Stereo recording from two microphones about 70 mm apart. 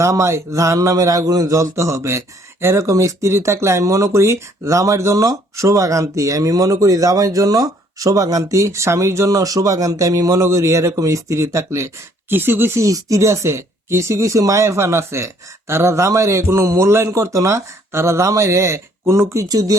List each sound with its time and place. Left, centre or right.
0.0 s speech: right
12.3 s speech: right
12.9 s speech: right
19.5 s speech: right